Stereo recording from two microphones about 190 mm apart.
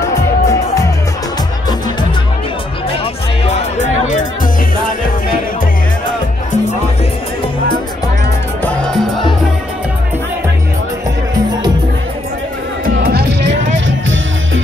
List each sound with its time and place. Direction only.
0.0 s music: 15° left (ahead or behind)
3.4 s music: 40° left (ahead or behind)
8.6 s music: 5° left (ahead or behind)
12.8 s music: 55° right (ahead or behind)
13.8 s music: 80° right